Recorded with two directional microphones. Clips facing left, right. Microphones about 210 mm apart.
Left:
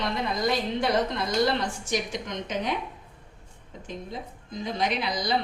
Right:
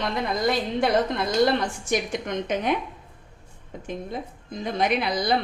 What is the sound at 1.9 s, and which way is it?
Speech, 55° right (ahead or behind).